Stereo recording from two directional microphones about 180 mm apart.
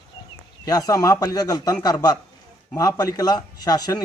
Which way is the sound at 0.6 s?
20° left (ahead or behind).